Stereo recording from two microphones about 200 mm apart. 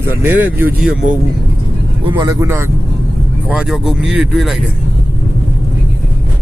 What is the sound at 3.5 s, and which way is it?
Speech, 5° right (ahead or behind).